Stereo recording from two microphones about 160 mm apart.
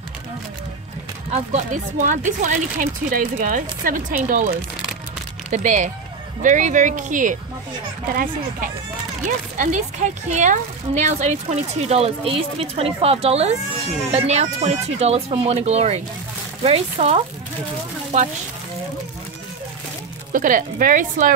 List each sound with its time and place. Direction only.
1.3 s speech: 45° right (ahead or behind)
5.5 s speech: 50° right (ahead or behind)
9.6 s speech: 50° right (ahead or behind)
20.3 s speech: 60° right (ahead or behind)